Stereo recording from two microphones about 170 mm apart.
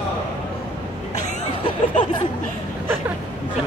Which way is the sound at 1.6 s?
25° left (ahead or behind).